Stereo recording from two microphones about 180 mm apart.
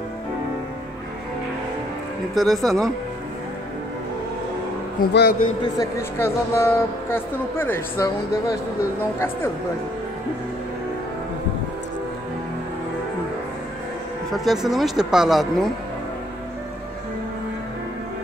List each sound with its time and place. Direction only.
2.3 s speech: centre (ahead or behind)
5.0 s a man's voice: 55° left (ahead or behind)
5.6 s speech: 20° left (ahead or behind)
14.3 s speech: centre (ahead or behind)